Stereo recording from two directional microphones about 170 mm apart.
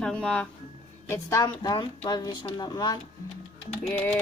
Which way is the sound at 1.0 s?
20° left (ahead or behind).